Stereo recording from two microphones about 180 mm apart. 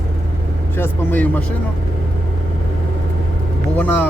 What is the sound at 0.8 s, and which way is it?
Speech, 10° left (ahead or behind).